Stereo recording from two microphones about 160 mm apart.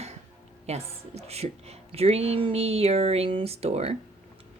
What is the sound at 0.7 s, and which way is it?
Speech, 40° right (ahead or behind).